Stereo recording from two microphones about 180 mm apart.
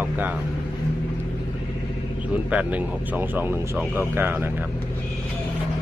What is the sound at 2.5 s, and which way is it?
Speech, 10° right (ahead or behind).